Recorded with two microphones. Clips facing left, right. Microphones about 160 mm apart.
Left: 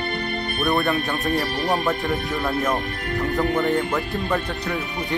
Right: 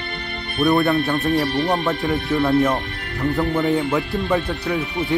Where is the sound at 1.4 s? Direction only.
45° left (ahead or behind).